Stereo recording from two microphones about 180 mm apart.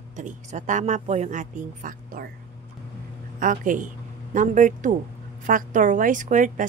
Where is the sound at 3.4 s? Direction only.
50° right (ahead or behind).